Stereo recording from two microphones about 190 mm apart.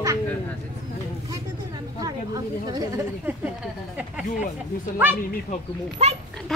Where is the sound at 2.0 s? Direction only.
20° right (ahead or behind).